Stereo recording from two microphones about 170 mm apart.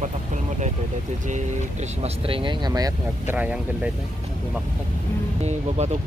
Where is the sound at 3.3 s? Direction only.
10° right (ahead or behind).